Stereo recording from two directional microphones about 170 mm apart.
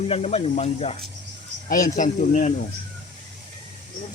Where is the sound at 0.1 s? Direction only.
40° left (ahead or behind).